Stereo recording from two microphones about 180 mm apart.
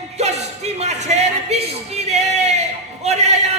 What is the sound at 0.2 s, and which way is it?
Music, 40° right (ahead or behind).